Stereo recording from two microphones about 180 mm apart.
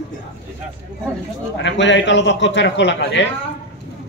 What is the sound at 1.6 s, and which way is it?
A man's voice, 85° left.